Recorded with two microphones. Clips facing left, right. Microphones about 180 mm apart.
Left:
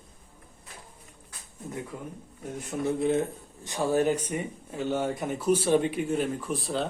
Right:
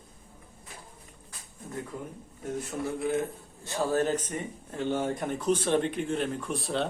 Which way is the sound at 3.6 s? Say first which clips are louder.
Left 2 dB; 15° left (ahead or behind).